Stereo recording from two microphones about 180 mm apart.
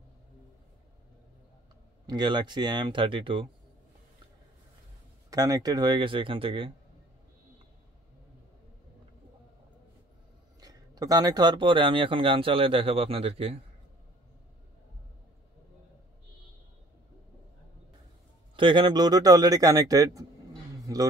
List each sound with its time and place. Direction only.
2.0 s speech: 25° right (ahead or behind)
5.3 s speech: 20° right (ahead or behind)
10.6 s speech: 20° right (ahead or behind)
18.6 s a man's voice: 25° right (ahead or behind)